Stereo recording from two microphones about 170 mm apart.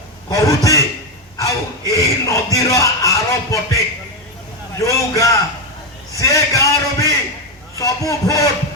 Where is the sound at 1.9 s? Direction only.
20° left (ahead or behind).